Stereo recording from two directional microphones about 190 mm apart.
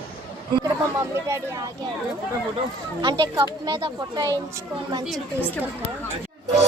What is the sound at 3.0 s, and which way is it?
Speech, 20° right (ahead or behind).